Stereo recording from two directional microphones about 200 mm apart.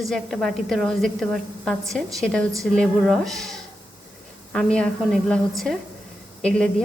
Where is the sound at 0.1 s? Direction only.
Centre (ahead or behind).